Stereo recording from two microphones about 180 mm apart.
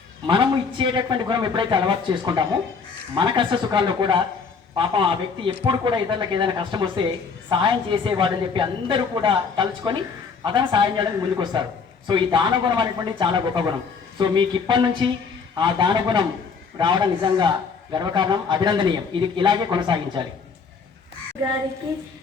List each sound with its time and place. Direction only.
0.3 s a woman's voice: 25° right (ahead or behind)